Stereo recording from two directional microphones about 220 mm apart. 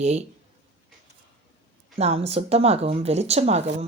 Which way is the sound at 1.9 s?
30° right (ahead or behind).